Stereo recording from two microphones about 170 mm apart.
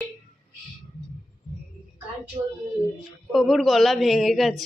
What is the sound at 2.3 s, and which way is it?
Speech, 25° right (ahead or behind).